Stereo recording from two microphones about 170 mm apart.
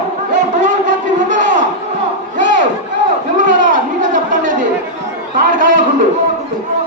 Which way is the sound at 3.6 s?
50° right (ahead or behind).